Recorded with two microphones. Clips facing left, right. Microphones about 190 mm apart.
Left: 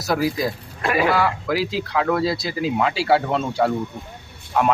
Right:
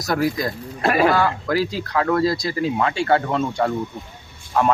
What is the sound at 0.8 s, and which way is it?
Speech, 35° right (ahead or behind).